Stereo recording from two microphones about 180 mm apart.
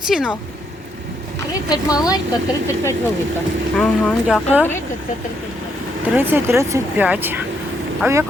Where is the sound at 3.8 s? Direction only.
5° left (ahead or behind).